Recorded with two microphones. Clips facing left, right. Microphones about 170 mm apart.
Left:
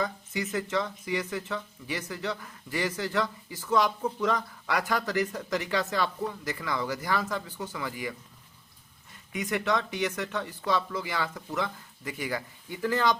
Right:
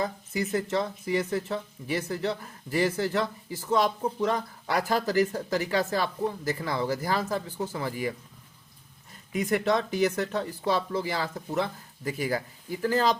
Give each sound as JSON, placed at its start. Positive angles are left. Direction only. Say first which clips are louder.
{"t": 0.0, "sound": "speech", "louder": "right 2 dB", "side_deg": -30}
{"t": 9.3, "sound": "speech", "louder": "right 3 dB", "side_deg": -35}